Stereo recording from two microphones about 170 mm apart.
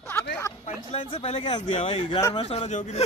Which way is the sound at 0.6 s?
40° left (ahead or behind).